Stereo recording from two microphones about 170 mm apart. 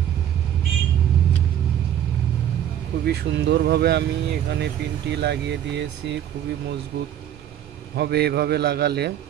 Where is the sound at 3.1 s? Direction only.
80° right.